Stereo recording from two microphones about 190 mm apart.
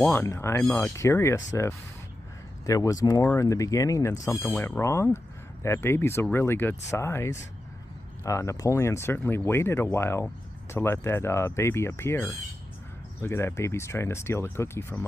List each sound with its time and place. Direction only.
0.0 s speech: 10° left (ahead or behind)